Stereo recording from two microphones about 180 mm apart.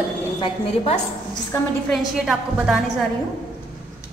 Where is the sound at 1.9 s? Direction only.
Centre (ahead or behind).